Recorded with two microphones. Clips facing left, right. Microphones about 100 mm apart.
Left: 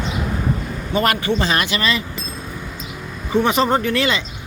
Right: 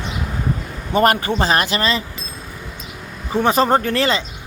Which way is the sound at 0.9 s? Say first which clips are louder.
Right 3 dB; 45° right (ahead or behind).